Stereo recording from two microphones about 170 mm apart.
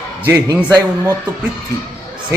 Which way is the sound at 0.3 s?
20° right (ahead or behind).